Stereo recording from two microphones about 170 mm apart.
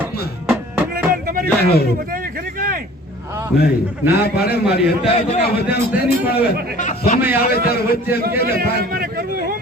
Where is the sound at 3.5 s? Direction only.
70° left (ahead or behind).